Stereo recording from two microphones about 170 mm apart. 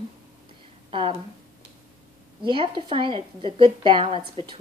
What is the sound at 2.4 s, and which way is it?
A woman's voice, 30° right (ahead or behind).